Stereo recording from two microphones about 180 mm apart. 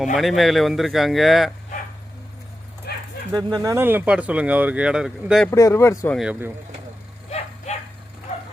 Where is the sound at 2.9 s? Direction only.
65° left (ahead or behind).